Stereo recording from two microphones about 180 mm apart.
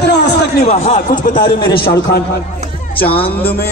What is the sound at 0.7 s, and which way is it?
A man's voice, 45° left (ahead or behind).